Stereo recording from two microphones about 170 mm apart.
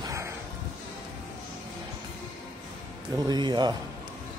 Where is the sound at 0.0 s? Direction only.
15° right (ahead or behind).